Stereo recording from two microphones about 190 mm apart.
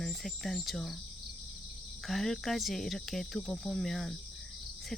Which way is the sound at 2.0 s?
Centre (ahead or behind).